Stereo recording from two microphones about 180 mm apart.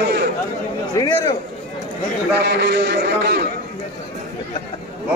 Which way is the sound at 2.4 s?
70° right (ahead or behind).